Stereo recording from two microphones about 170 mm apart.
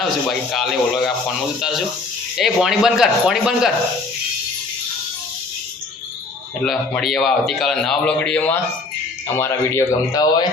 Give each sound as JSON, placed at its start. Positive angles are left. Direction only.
{"t": 0.0, "sound": "a man's voice", "side_deg": 0}
{"t": 2.4, "sound": "a man's voice", "side_deg": 0}
{"t": 6.7, "sound": "a man's voice", "side_deg": 0}